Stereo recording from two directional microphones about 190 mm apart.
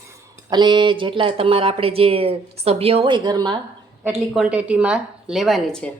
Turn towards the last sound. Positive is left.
turn(degrees=5)  # may be behind; listen again after turning